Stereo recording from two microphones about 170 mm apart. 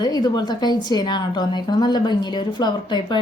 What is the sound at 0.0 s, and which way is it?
A woman's voice, 25° left (ahead or behind).